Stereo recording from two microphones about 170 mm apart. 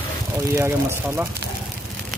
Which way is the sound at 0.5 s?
15° right (ahead or behind).